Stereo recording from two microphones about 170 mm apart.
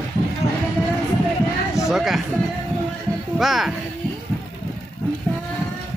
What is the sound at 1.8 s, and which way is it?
Speech, centre (ahead or behind).